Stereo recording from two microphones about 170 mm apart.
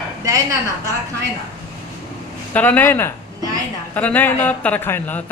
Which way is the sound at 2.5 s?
10° left (ahead or behind).